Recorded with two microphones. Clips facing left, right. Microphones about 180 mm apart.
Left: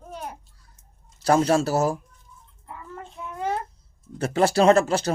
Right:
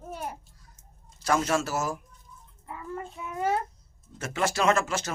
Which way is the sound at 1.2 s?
35° left (ahead or behind).